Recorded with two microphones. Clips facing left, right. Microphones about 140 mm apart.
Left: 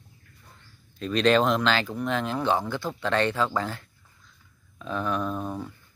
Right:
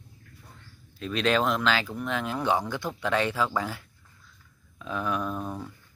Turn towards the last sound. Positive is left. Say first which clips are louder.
# left 2 dB
turn(degrees=10)  # may be behind; listen again after turning